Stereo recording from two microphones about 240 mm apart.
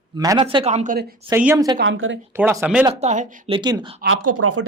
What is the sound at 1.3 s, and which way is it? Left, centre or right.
Speech, centre.